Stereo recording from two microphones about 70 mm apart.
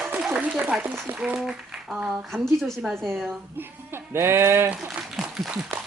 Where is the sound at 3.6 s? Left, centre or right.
Right.